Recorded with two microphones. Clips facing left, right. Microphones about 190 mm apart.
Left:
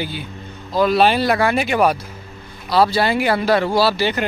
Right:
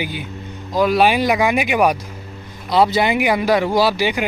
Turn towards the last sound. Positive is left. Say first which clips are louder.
# even
turn(degrees=-15)  # may be behind; listen again after turning